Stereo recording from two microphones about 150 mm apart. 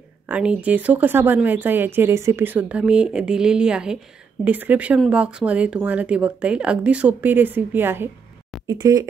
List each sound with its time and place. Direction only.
0.3 s speech: 10° right (ahead or behind)
8.6 s speech: 25° right (ahead or behind)